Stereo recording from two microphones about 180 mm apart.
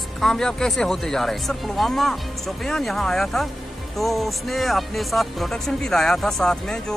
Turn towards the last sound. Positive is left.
turn(degrees=5)  # may be behind; listen again after turning